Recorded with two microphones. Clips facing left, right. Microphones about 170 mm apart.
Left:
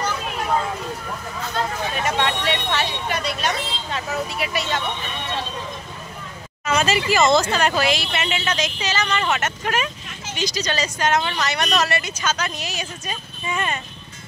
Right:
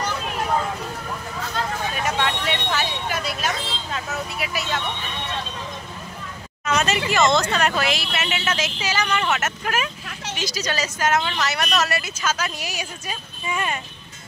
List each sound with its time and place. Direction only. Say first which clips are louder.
2.0 s speech: left 2 dB; centre (ahead or behind)
6.6 s speech: left 2 dB; 5° left (ahead or behind)